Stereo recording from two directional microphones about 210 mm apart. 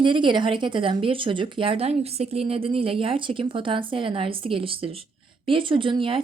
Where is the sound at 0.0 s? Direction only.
25° right (ahead or behind).